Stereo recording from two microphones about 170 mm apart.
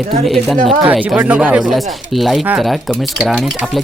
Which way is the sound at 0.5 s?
30° right (ahead or behind).